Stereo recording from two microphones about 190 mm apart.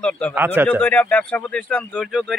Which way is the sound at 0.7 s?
10° left (ahead or behind).